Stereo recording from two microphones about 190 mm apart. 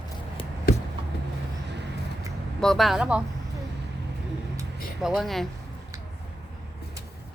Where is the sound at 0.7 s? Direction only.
50° left (ahead or behind).